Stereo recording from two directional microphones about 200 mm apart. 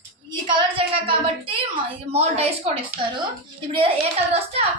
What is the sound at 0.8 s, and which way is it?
A woman's voice, 25° right (ahead or behind).